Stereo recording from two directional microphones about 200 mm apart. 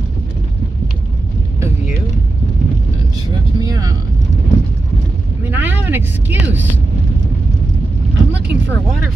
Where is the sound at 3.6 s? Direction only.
20° right (ahead or behind).